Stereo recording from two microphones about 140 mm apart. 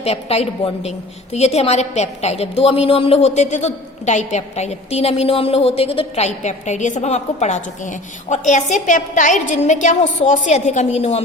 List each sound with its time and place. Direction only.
0.0 s a woman's voice: 45° left (ahead or behind)